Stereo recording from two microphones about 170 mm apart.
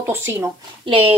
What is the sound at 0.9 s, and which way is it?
Speech, 30° right (ahead or behind).